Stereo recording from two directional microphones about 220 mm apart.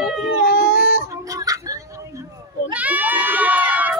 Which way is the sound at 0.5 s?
45° left (ahead or behind).